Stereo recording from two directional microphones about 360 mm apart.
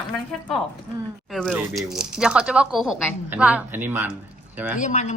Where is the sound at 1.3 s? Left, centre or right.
Centre.